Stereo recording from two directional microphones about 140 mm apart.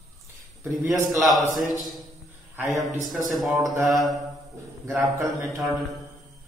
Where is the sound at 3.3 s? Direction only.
Centre (ahead or behind).